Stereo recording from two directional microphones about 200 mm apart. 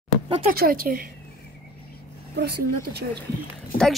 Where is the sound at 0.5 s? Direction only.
50° right (ahead or behind).